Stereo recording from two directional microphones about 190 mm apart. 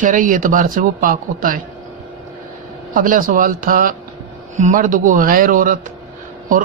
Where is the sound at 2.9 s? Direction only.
45° right (ahead or behind).